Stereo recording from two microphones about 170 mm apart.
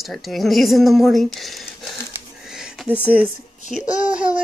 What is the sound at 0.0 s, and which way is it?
Speech, centre (ahead or behind).